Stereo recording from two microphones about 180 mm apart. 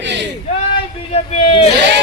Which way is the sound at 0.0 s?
75° right (ahead or behind).